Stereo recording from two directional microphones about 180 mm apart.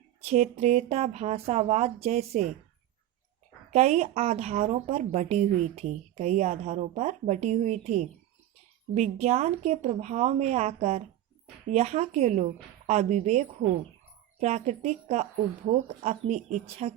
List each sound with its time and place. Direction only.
0.3 s a woman's voice: 35° right (ahead or behind)
3.7 s a woman's voice: 40° right (ahead or behind)